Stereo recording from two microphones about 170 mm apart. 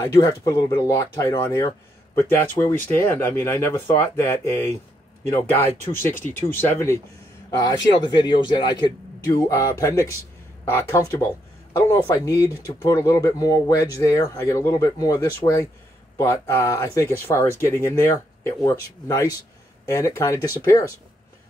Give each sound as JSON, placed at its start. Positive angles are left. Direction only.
{"t": 0.0, "sound": "speech", "side_deg": 20}
{"t": 6.0, "sound": "speech", "side_deg": 10}
{"t": 7.5, "sound": "speech", "side_deg": 25}